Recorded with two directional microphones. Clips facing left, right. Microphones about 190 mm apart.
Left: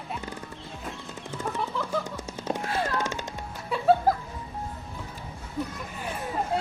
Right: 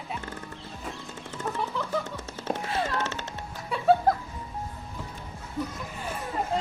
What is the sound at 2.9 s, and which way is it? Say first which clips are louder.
Music: left 1 dB; 15° left (ahead or behind).